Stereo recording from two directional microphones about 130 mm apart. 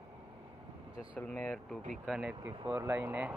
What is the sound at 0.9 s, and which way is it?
Speech, 10° right (ahead or behind).